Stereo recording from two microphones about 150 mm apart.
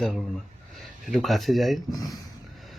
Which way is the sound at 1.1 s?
Centre (ahead or behind).